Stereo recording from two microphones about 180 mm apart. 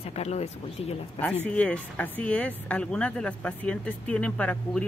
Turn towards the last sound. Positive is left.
turn(degrees=5)  # may be behind; listen again after turning